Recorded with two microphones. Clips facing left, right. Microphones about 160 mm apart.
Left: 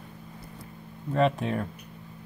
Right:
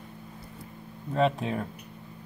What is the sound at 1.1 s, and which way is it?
Speech, centre (ahead or behind).